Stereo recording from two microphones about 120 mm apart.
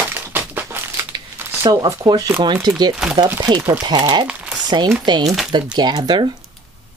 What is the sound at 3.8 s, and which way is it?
Speech, 40° right (ahead or behind).